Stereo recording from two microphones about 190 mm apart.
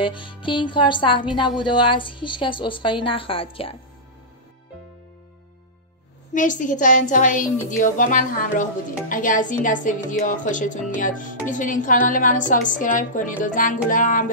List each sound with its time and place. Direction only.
0.0 s a woman's voice: 25° left (ahead or behind)
6.3 s speech: 45° left (ahead or behind)